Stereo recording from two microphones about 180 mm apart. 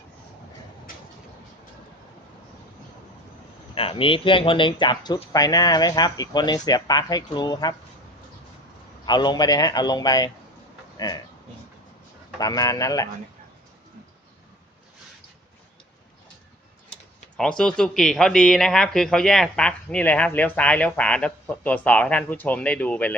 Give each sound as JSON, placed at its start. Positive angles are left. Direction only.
{"t": 3.8, "sound": "speech", "side_deg": 30}
{"t": 9.0, "sound": "speech", "side_deg": 25}
{"t": 12.4, "sound": "speech", "side_deg": 20}
{"t": 17.3, "sound": "speech", "side_deg": 5}